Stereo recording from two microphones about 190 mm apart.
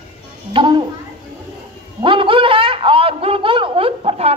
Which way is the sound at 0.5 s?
25° right (ahead or behind).